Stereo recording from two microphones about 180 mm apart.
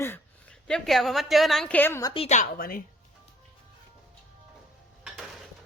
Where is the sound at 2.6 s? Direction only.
55° left (ahead or behind).